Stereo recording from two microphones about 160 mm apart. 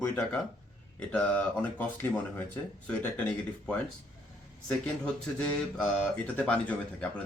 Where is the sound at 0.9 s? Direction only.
5° left (ahead or behind).